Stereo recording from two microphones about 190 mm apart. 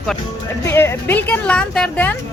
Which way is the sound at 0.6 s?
15° left (ahead or behind).